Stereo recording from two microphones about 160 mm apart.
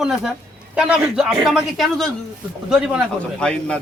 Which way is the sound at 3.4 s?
5° left (ahead or behind).